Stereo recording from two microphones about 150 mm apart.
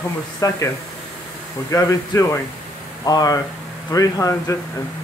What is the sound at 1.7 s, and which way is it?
Speech, 20° left (ahead or behind).